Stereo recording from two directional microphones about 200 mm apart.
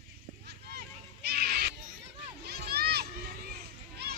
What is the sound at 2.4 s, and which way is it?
Children playing, 50° right (ahead or behind).